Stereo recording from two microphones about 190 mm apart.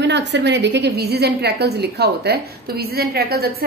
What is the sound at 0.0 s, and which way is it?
A woman's voice, 65° right (ahead or behind).